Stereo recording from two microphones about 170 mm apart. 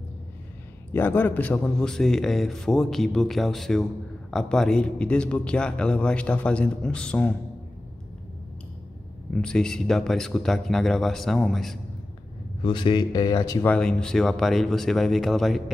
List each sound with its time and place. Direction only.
0.9 s a man's voice: 10° left (ahead or behind)
9.3 s a man's voice: 5° left (ahead or behind)
12.6 s speech: 30° left (ahead or behind)
13.7 s a man's voice: 5° left (ahead or behind)